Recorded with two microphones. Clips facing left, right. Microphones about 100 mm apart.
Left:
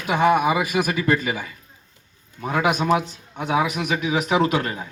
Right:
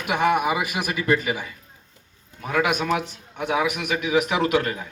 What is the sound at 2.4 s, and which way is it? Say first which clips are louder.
Speech: left 2 dB; 25° left (ahead or behind).